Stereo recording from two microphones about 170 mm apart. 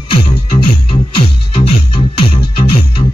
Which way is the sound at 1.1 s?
30° left (ahead or behind).